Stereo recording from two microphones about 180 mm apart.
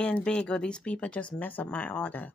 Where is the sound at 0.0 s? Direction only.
5° left (ahead or behind).